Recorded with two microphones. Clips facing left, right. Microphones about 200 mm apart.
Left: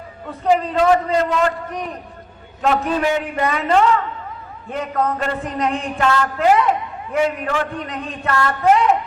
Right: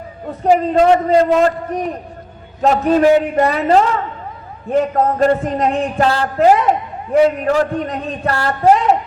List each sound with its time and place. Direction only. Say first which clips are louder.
0.3 s a man's voice: right 4 dB; 35° right (ahead or behind)